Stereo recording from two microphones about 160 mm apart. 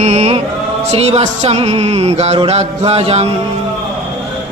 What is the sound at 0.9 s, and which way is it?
Music, 40° right (ahead or behind).